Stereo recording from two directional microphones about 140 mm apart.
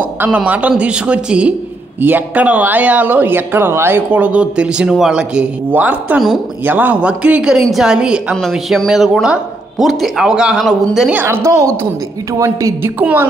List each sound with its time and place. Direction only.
0.0 s a woman's voice: 10° right (ahead or behind)